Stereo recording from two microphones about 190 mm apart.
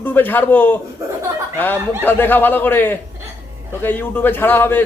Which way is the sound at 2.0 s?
10° left (ahead or behind).